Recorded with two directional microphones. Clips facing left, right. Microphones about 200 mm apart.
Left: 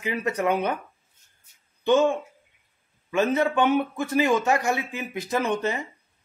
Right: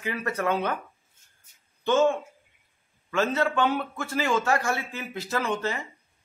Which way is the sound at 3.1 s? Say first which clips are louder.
Left 3 dB; 20° left (ahead or behind).